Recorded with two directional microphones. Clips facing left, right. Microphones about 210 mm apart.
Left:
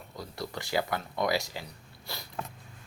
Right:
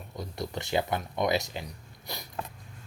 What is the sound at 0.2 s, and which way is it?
Speech, 20° right (ahead or behind).